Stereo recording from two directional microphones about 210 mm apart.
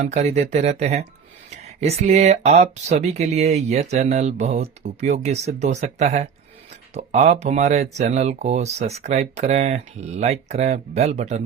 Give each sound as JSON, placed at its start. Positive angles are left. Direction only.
{"t": 0.0, "sound": "speech", "side_deg": -30}